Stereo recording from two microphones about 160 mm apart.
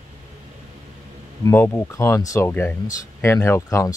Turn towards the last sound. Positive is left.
turn(degrees=15)  # may be behind; listen again after turning